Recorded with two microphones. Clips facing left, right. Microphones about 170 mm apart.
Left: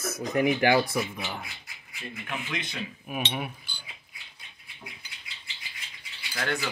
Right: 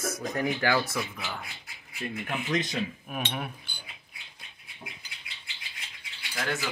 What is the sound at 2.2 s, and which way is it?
Speech, 40° right (ahead or behind).